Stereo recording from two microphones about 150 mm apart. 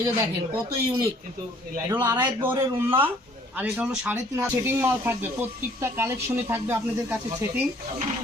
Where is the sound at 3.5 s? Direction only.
5° right (ahead or behind).